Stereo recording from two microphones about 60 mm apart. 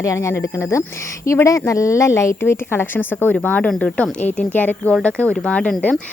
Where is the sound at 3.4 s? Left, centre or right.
Left.